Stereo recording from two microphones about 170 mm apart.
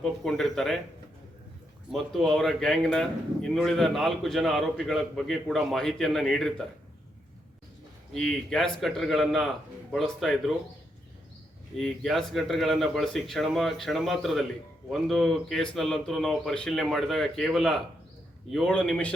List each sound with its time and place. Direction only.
0.0 s a man's voice: 5° left (ahead or behind)
1.9 s a man's voice: centre (ahead or behind)
8.1 s a man's voice: 5° left (ahead or behind)
11.8 s a man's voice: centre (ahead or behind)